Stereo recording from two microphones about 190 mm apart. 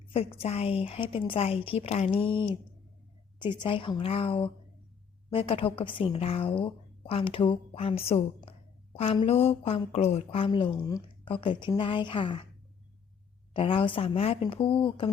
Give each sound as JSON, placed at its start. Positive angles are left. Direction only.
{"t": 0.3, "sound": "a woman's voice", "side_deg": 30}
{"t": 13.5, "sound": "a woman's voice", "side_deg": 30}